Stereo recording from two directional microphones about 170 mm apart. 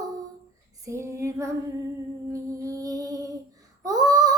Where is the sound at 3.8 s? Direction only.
20° right (ahead or behind).